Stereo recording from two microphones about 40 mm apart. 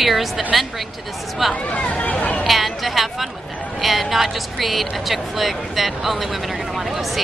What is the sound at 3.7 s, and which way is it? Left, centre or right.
Speech, centre.